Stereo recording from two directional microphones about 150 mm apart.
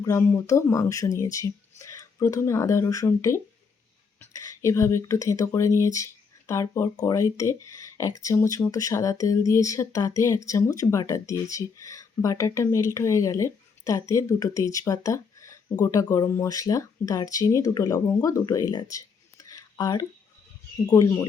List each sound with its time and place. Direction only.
0.0 s speech: 20° left (ahead or behind)